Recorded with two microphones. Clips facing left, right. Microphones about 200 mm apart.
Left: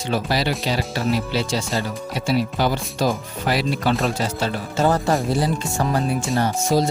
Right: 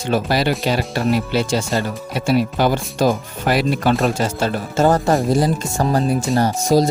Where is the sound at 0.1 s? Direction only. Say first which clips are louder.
Right 4 dB; 50° right (ahead or behind).